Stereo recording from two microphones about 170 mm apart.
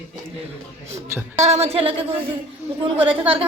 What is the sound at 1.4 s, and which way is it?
Speech, 40° right (ahead or behind).